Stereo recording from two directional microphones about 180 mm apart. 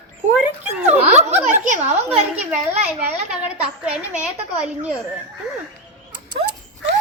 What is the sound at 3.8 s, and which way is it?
Speech, 5° right (ahead or behind).